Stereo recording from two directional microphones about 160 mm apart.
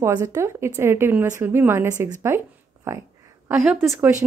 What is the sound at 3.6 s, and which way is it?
Speech, 5° right (ahead or behind).